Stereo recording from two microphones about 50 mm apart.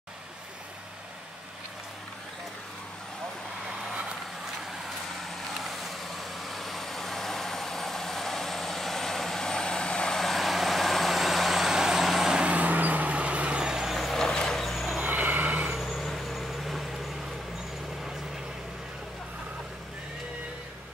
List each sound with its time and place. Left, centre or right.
4.6 s vehicle: centre
10.1 s vehicle: centre
12.4 s vehicle: right
13.6 s vehicle: centre
14.1 s vehicle: centre
15.0 s vehicle: right
15.8 s vehicle: centre